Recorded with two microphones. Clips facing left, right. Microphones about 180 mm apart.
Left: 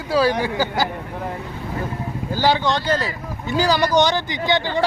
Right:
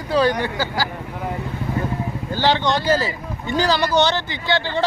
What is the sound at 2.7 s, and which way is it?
Speech, centre (ahead or behind).